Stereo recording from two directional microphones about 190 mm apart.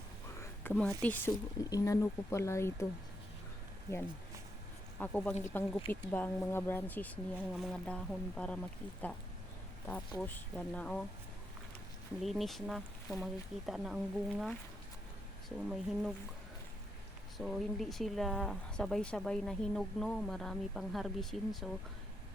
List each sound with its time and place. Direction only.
0.3 s speech: 10° left (ahead or behind)
3.9 s speech: 15° left (ahead or behind)
7.3 s speech: centre (ahead or behind)
10.2 s speech: 10° left (ahead or behind)
12.2 s speech: centre (ahead or behind)
17.3 s speech: centre (ahead or behind)